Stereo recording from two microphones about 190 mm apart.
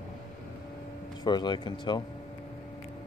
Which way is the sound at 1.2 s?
20° left (ahead or behind).